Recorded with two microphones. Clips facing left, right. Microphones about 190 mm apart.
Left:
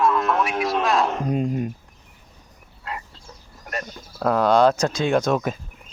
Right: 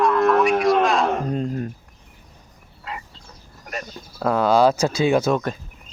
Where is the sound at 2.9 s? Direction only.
Centre (ahead or behind).